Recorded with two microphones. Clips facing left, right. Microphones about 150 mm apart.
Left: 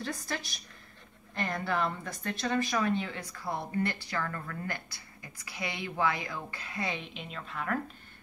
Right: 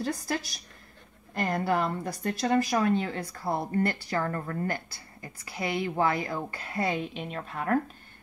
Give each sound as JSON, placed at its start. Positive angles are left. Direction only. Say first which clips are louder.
{"t": 1.4, "sound": "a woman's voice", "louder": "right 4 dB", "side_deg": -40}